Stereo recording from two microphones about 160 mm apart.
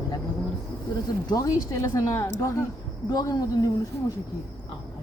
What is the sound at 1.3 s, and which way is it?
Speech, 20° left (ahead or behind).